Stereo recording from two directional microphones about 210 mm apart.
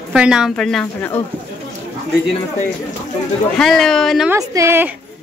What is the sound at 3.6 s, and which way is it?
Speech, centre (ahead or behind).